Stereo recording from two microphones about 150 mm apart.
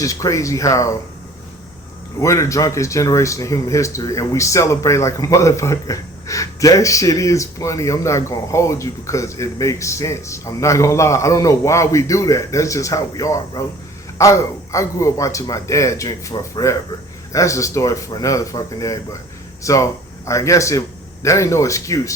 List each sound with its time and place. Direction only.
0.0 s speech: 20° left (ahead or behind)
2.2 s a man's voice: 20° left (ahead or behind)